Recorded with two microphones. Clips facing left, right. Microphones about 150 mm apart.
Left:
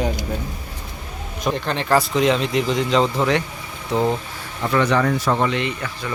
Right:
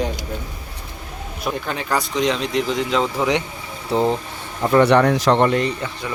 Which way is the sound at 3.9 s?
30° right (ahead or behind).